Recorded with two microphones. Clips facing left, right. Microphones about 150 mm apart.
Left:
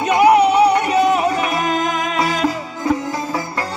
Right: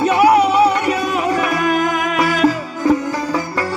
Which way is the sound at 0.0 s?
20° left (ahead or behind).